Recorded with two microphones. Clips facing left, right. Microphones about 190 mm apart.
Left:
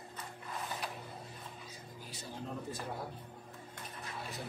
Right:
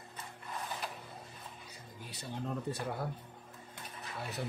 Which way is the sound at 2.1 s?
65° right (ahead or behind).